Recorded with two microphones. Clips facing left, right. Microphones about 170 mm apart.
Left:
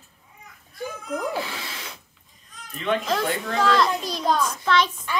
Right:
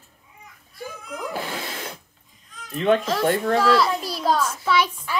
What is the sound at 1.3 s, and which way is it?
Speech, 45° right (ahead or behind).